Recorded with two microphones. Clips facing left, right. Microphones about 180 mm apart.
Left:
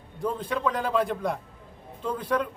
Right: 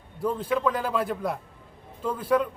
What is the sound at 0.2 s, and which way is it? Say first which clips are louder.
A man's voice: right 2 dB; 5° right (ahead or behind).